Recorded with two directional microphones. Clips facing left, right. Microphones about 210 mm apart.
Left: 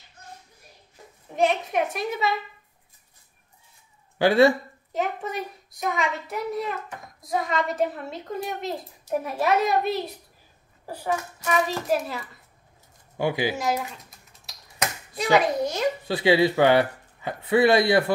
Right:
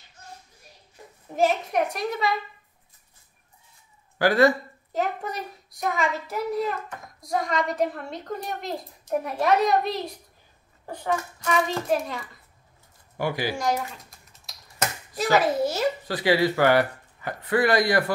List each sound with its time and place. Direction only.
1.3 s a child's voice: centre (ahead or behind)
4.2 s speech: 25° left (ahead or behind)
4.9 s a child's voice: centre (ahead or behind)
13.2 s speech: 20° left (ahead or behind)
13.6 s typing: centre (ahead or behind)
15.1 s a child's voice: 5° right (ahead or behind)
16.1 s speech: 20° left (ahead or behind)